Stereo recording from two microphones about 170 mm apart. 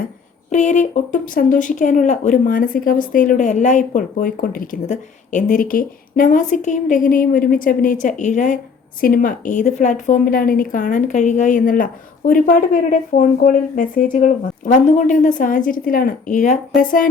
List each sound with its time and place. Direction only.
0.5 s a woman's voice: 45° left (ahead or behind)